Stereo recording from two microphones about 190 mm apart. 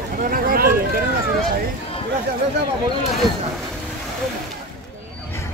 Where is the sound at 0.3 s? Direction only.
50° right (ahead or behind).